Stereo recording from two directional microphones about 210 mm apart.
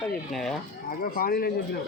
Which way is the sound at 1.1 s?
45° left (ahead or behind).